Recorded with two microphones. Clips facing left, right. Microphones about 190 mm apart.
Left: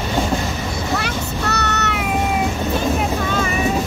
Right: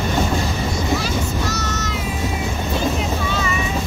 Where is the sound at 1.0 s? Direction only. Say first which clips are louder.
Right 1 dB; 65° left (ahead or behind).